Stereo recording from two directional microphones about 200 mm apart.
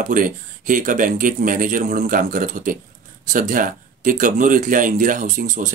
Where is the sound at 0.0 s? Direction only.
40° right (ahead or behind).